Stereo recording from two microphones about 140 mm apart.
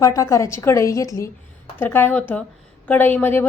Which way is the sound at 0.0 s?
25° left (ahead or behind).